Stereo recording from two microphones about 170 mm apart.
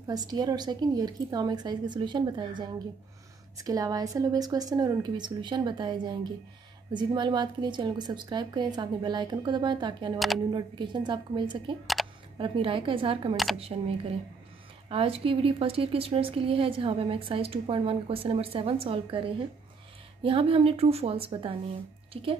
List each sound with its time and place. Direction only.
0.0 s a woman's voice: 25° right (ahead or behind)
10.1 s speech: centre (ahead or behind)
10.5 s a woman's voice: 25° right (ahead or behind)